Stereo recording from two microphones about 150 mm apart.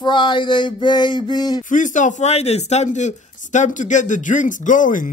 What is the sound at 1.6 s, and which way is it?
A man's voice, 60° left (ahead or behind).